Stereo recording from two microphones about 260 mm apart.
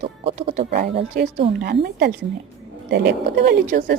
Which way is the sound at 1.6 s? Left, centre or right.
Right.